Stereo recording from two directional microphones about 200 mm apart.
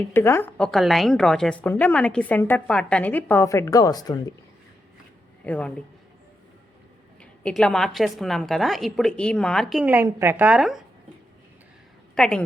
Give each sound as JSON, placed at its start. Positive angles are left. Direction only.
{"t": 0.1, "sound": "a woman's voice", "side_deg": 10}
{"t": 5.5, "sound": "a woman's voice", "side_deg": 5}
{"t": 7.2, "sound": "a woman's voice", "side_deg": 5}
{"t": 12.1, "sound": "a woman's voice", "side_deg": 0}